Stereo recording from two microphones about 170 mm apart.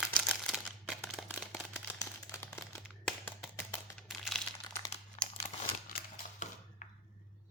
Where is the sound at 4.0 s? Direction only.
Centre (ahead or behind).